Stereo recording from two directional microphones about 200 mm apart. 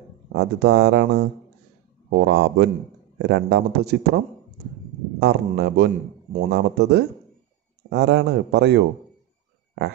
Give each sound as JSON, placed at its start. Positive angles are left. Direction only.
{"t": 0.3, "sound": "a man's voice", "side_deg": -60}
{"t": 5.2, "sound": "a man's voice", "side_deg": -55}